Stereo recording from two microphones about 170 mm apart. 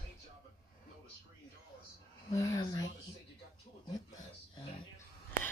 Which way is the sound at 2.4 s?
20° left (ahead or behind).